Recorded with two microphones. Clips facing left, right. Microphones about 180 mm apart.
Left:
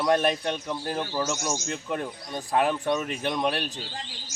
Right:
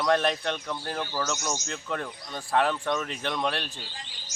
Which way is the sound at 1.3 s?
10° left (ahead or behind).